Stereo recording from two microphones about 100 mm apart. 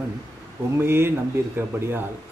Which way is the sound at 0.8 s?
25° right (ahead or behind).